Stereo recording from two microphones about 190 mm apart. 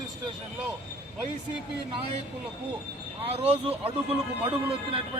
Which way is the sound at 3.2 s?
30° right (ahead or behind).